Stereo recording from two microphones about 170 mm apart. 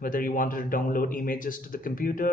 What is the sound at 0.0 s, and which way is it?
A man's voice, 55° left (ahead or behind).